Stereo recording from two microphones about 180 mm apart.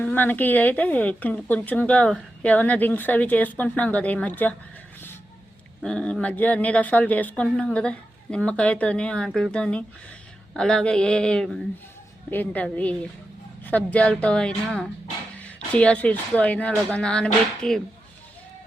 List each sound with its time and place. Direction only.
0.0 s a woman's voice: 10° left (ahead or behind)
5.8 s a woman's voice: 5° left (ahead or behind)